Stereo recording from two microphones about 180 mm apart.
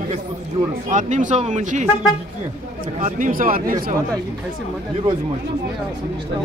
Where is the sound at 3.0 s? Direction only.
45° right (ahead or behind).